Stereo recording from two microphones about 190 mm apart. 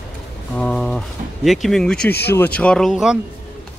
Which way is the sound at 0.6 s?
5° left (ahead or behind).